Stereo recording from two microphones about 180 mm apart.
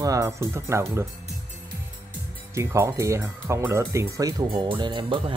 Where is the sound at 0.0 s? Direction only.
20° right (ahead or behind).